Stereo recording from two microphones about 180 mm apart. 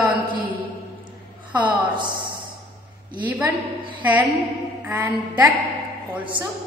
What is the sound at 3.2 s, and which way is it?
A woman's voice, 10° right (ahead or behind).